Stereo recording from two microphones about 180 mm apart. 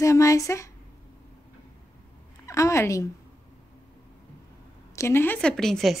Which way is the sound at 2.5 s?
15° left (ahead or behind).